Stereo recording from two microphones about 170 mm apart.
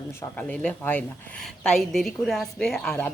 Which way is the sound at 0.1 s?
10° left (ahead or behind).